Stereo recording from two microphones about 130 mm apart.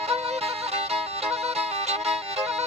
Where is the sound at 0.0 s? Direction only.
55° right (ahead or behind).